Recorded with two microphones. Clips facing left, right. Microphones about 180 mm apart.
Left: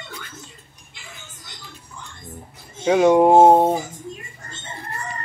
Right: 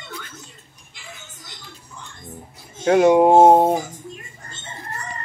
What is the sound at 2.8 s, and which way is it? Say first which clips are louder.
Speech: right 1 dB; 5° right (ahead or behind).